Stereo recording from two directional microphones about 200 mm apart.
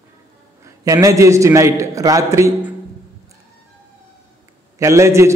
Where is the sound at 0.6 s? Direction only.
15° right (ahead or behind).